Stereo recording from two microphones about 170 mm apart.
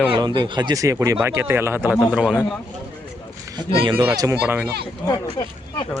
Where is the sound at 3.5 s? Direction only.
30° right (ahead or behind).